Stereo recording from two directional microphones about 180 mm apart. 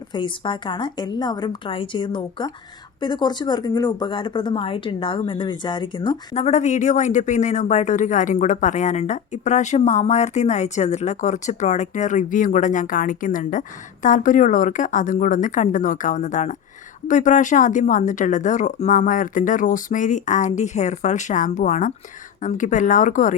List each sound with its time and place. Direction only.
0.1 s a woman's voice: 25° left (ahead or behind); by 23.3 s 45° left (ahead or behind)